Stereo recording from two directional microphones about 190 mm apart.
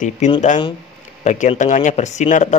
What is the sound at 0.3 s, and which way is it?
A man's voice, 35° left (ahead or behind).